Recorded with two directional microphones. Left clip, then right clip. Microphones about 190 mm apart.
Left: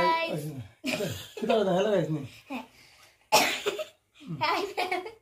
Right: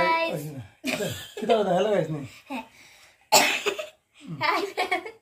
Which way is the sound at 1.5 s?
10° left (ahead or behind).